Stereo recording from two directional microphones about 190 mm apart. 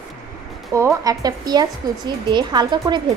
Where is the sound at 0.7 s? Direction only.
15° right (ahead or behind).